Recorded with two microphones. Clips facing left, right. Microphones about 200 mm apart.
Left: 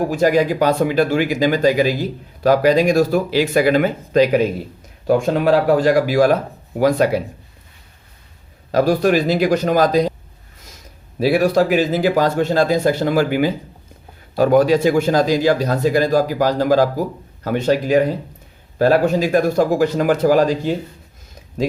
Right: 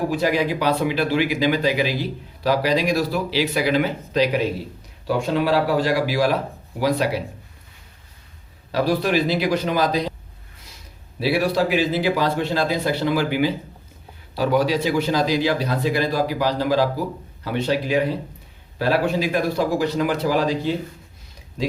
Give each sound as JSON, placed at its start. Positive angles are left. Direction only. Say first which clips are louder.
{"t": 0.1, "sound": "speech", "louder": "left 5 dB", "side_deg": 45}
{"t": 8.7, "sound": "speech", "louder": "left 5 dB", "side_deg": 45}
{"t": 11.2, "sound": "speech", "louder": "left 5 dB", "side_deg": 45}